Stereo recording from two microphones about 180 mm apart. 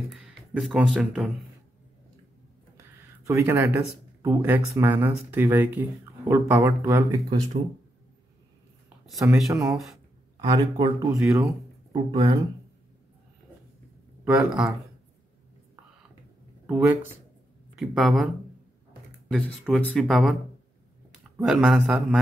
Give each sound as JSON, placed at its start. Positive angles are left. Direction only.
{"t": 0.1, "sound": "speech", "side_deg": -5}
{"t": 2.8, "sound": "speech", "side_deg": -15}
{"t": 9.5, "sound": "speech", "side_deg": -20}
{"t": 12.1, "sound": "speech", "side_deg": -30}
{"t": 14.2, "sound": "speech", "side_deg": -5}
{"t": 16.6, "sound": "speech", "side_deg": -5}
{"t": 19.3, "sound": "speech", "side_deg": 0}
{"t": 21.4, "sound": "speech", "side_deg": 0}